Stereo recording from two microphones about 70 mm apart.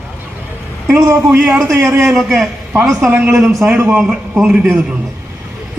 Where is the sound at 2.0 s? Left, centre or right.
Centre.